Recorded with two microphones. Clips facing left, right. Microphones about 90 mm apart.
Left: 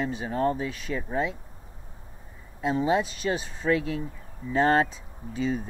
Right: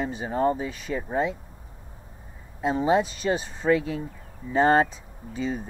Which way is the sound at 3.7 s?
60° left (ahead or behind).